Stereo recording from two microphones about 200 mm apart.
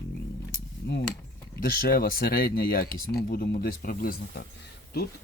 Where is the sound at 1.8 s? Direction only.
50° left (ahead or behind).